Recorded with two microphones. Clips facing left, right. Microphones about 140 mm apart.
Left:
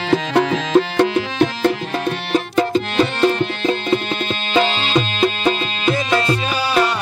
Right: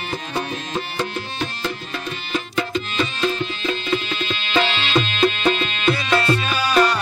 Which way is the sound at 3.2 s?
65° left (ahead or behind).